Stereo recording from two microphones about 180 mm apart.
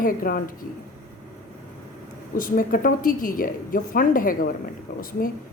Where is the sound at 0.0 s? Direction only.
50° left (ahead or behind).